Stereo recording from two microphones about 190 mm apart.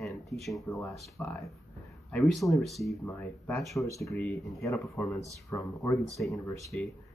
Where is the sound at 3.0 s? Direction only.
10° left (ahead or behind).